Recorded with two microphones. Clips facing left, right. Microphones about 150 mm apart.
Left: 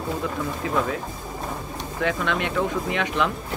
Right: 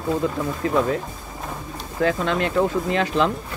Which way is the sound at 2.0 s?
35° right (ahead or behind).